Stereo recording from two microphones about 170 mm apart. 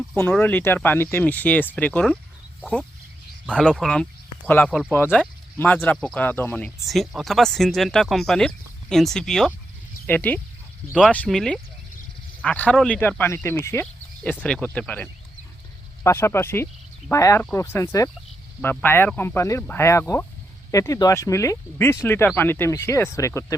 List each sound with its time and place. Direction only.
0.2 s speech: 10° left (ahead or behind)
3.4 s speech: 5° left (ahead or behind)